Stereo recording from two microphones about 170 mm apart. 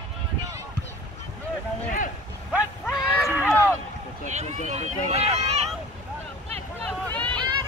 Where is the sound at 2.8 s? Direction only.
5° right (ahead or behind).